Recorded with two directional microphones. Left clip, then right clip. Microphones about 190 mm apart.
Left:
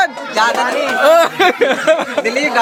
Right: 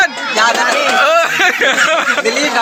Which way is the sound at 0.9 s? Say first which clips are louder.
Left 4 dB; 15° left (ahead or behind).